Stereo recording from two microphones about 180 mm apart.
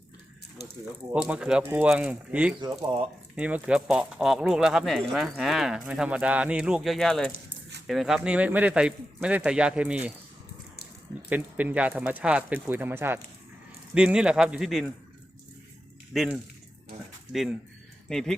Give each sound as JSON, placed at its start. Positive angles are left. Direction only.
{"t": 1.1, "sound": "speech", "side_deg": -5}
{"t": 2.8, "sound": "speech", "side_deg": -30}
{"t": 3.3, "sound": "speech", "side_deg": -5}
{"t": 11.3, "sound": "speech", "side_deg": -10}
{"t": 16.1, "sound": "speech", "side_deg": 0}
{"t": 18.1, "sound": "speech", "side_deg": 5}